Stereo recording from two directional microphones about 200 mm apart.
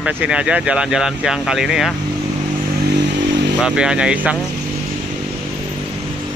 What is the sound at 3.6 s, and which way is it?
Speech, 5° right (ahead or behind).